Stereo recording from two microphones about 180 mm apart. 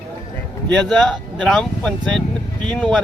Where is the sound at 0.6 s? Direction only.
5° left (ahead or behind).